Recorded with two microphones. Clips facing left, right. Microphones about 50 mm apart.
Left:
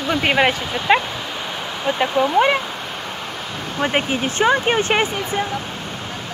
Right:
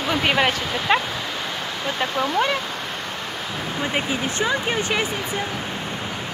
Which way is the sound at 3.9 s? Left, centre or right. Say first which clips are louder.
Left 4 dB; left.